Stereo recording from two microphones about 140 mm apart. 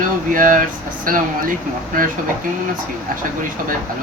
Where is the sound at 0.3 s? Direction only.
75° right (ahead or behind).